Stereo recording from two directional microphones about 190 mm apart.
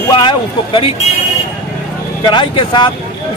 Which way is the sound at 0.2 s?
25° left (ahead or behind).